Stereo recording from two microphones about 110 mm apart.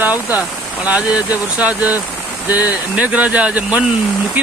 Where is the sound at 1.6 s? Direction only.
10° right (ahead or behind).